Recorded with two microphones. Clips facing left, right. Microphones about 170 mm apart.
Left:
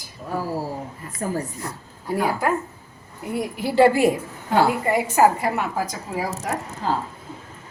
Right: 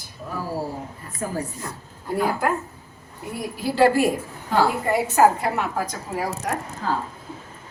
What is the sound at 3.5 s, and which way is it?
A woman's voice, 15° left (ahead or behind).